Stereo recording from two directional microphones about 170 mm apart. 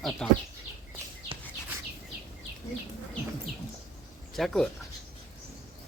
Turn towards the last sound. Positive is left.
turn(degrees=0)  # may be behind; listen again after turning